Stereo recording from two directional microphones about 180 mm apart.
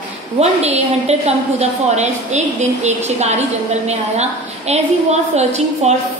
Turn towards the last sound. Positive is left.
turn(degrees=-40)  # may be behind; listen again after turning